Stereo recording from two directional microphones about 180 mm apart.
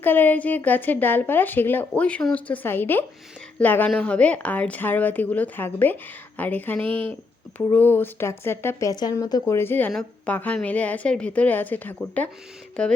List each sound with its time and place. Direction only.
0.0 s a woman's voice: 10° left (ahead or behind)
6.8 s speech: 30° right (ahead or behind)
7.7 s a woman's voice: 10° left (ahead or behind)